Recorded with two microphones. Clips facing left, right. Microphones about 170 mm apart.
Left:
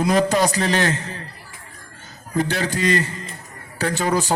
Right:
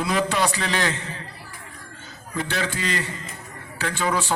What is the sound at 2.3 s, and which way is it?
A man's voice, 40° left (ahead or behind).